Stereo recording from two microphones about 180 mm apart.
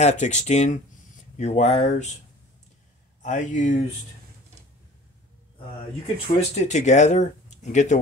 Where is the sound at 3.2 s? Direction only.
45° left (ahead or behind).